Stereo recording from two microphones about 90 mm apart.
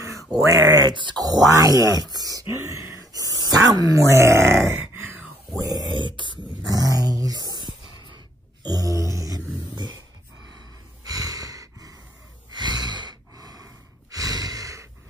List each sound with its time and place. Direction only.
0.3 s speech: 40° right (ahead or behind)
1.2 s grunt: 10° left (ahead or behind)
1.5 s speech: 40° right (ahead or behind)
4.6 s a sound: 25° right (ahead or behind)
5.5 s speech: 40° right (ahead or behind)
5.9 s beatboxing: 65° right (ahead or behind)
6.7 s a sound: 45° right (ahead or behind)
11.1 s a sound: 40° right (ahead or behind)
12.4 s snort: 55° right (ahead or behind)
14.1 s sigh: 40° right (ahead or behind)